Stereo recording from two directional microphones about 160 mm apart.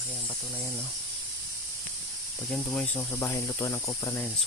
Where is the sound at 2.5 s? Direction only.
10° left (ahead or behind).